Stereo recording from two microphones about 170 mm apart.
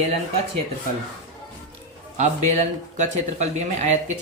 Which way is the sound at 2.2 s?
40° right (ahead or behind).